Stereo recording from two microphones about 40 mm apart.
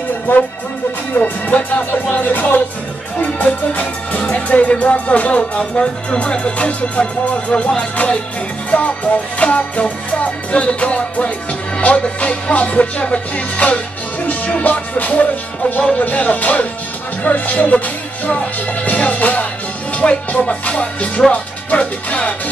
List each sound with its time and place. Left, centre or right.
1.1 s music: left